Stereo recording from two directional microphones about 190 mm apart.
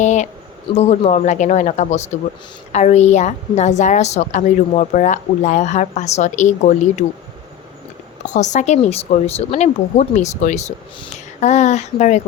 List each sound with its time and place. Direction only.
0.0 s a woman's voice: 40° left (ahead or behind)
8.3 s a woman's voice: 40° left (ahead or behind)